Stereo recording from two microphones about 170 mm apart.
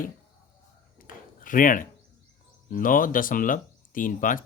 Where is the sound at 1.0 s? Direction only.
55° left (ahead or behind).